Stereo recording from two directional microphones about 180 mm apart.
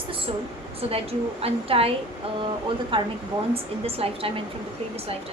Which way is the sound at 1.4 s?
35° right (ahead or behind).